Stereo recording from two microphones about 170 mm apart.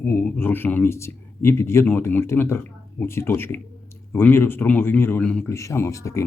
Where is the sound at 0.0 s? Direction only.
10° left (ahead or behind).